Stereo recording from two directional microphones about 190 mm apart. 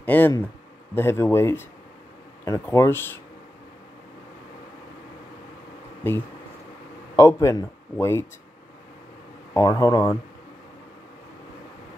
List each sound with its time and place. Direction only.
0.0 s speech: 10° left (ahead or behind)
7.2 s speech: 15° left (ahead or behind)
9.5 s speech: 20° left (ahead or behind)